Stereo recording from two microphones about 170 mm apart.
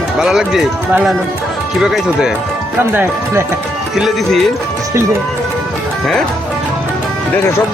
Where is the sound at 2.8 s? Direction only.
15° right (ahead or behind).